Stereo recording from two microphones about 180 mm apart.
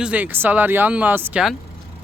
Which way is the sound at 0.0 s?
10° right (ahead or behind).